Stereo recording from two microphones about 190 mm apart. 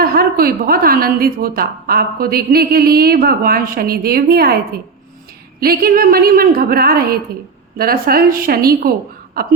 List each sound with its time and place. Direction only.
0.0 s a woman's voice: 55° right (ahead or behind)
5.5 s a woman's voice: 55° right (ahead or behind)